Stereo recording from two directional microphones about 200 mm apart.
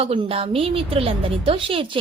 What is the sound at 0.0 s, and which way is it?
A woman's voice, 30° right (ahead or behind).